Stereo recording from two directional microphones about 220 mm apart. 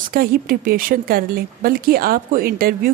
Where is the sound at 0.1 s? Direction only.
40° right (ahead or behind).